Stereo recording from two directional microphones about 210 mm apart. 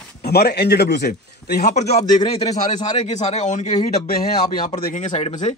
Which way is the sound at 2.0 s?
20° left (ahead or behind).